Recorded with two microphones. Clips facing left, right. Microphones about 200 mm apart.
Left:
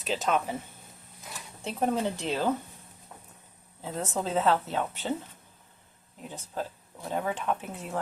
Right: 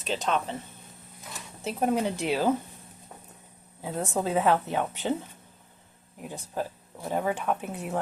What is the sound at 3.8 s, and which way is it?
A woman's voice, 10° right (ahead or behind).